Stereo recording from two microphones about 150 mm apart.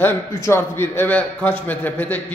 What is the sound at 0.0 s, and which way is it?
A man's voice, 15° left (ahead or behind).